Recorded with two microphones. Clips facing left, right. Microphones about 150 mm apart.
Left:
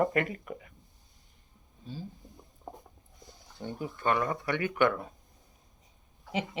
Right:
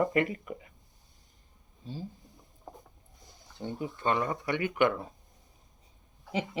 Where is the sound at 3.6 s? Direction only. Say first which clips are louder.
Right 1 dB; 25° right (ahead or behind).